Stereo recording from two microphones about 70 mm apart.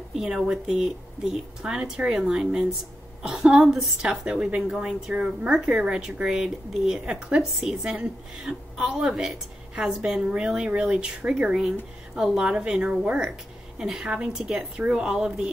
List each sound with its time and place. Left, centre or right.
0.1 s speech: centre